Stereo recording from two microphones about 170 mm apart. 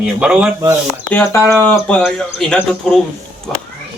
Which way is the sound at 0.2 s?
5° right (ahead or behind).